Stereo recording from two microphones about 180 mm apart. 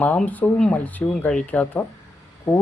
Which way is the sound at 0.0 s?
10° left (ahead or behind).